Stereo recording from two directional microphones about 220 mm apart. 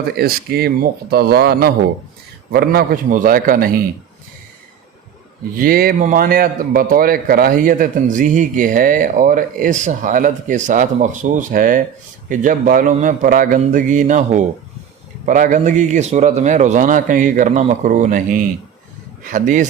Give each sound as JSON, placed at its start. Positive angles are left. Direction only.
{"t": 0.2, "sound": "a man's voice", "side_deg": -45}
{"t": 5.5, "sound": "a man's voice", "side_deg": -40}